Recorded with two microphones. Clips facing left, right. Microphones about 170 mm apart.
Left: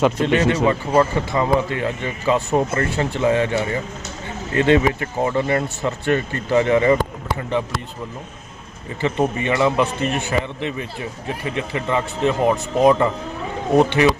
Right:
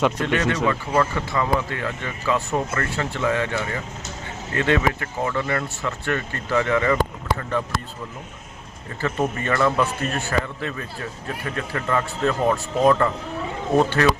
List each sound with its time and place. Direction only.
0.2 s a man's voice: 25° left (ahead or behind)
9.0 s a man's voice: 20° left (ahead or behind)